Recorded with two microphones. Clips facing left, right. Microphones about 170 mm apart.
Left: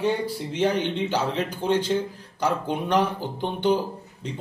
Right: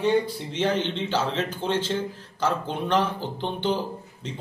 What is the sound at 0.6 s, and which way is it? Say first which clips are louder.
A man's voice: left 2 dB; 10° left (ahead or behind).